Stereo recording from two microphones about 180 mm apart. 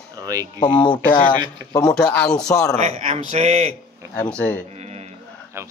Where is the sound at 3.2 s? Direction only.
35° right (ahead or behind).